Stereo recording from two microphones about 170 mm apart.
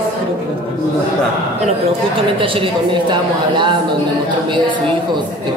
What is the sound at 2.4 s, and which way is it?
A woman's voice, 30° right (ahead or behind).